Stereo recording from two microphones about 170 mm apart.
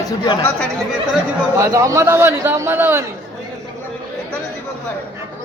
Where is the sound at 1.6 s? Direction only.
15° right (ahead or behind).